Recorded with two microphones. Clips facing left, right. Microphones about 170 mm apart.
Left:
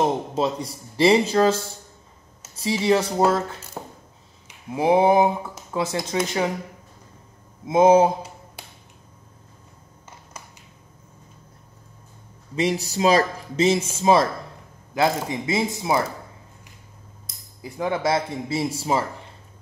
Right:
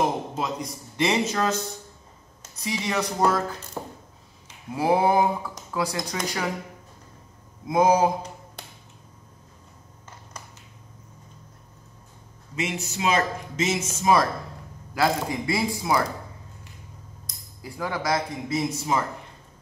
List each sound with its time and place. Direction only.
0.4 s speech: 30° left (ahead or behind)
2.8 s speech: 30° left (ahead or behind)
4.5 s a sound: 20° left (ahead or behind)
5.7 s speech: 25° left (ahead or behind)
7.6 s speech: 25° left (ahead or behind)
12.5 s speech: 35° left (ahead or behind)
17.6 s speech: 20° left (ahead or behind)